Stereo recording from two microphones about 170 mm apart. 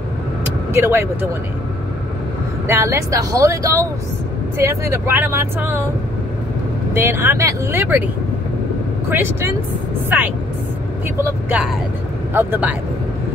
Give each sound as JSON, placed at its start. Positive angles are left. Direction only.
{"t": 0.7, "sound": "speech", "side_deg": -15}
{"t": 2.7, "sound": "speech", "side_deg": -15}
{"t": 6.9, "sound": "speech", "side_deg": -15}
{"t": 9.1, "sound": "speech", "side_deg": -15}